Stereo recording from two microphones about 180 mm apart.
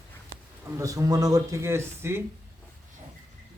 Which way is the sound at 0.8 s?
20° right (ahead or behind).